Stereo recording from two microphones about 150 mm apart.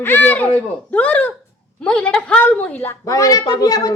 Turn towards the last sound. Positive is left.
turn(degrees=25)  # may be behind; listen again after turning